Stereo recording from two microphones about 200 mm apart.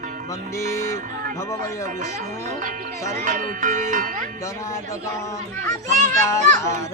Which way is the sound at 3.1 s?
40° right (ahead or behind).